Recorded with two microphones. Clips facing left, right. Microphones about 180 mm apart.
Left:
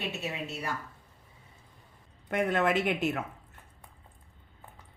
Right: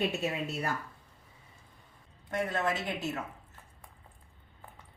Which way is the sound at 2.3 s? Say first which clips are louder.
Left 5 dB; 60° left (ahead or behind).